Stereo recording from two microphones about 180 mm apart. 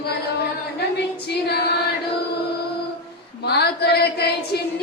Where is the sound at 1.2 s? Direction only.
60° left (ahead or behind).